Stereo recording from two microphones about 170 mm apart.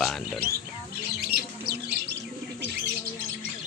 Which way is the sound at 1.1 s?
70° right (ahead or behind).